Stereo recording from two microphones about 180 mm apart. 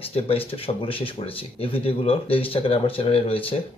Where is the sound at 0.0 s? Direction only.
30° left (ahead or behind).